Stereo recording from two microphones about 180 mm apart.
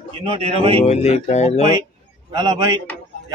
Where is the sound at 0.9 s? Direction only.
40° left (ahead or behind).